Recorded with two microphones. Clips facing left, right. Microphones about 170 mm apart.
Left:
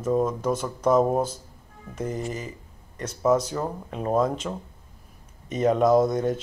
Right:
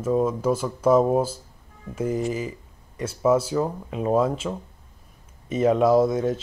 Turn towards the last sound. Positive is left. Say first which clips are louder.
# right 1 dB
turn(degrees=-5)  # may be behind; listen again after turning